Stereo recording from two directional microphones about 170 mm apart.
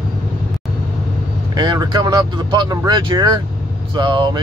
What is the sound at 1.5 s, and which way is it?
Speech, 25° right (ahead or behind).